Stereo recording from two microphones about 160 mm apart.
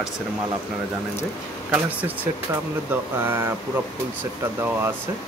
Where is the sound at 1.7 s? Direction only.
10° right (ahead or behind).